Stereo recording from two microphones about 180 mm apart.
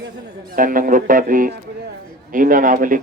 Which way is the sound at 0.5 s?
50° right (ahead or behind).